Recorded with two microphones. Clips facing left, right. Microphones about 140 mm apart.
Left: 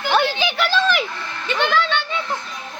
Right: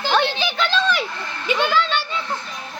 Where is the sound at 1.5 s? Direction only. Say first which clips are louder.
Even; 10° right (ahead or behind).